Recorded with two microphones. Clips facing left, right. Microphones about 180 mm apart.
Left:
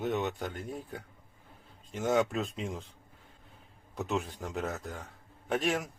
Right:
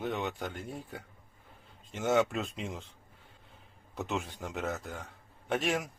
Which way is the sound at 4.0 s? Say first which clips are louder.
Left 2 dB; centre (ahead or behind).